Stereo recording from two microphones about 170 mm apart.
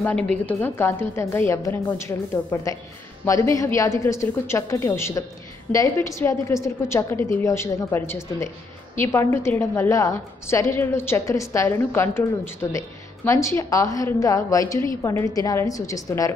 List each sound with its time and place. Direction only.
0.0 s a woman's voice: 10° left (ahead or behind)